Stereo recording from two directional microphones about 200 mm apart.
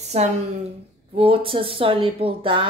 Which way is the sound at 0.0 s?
35° right (ahead or behind).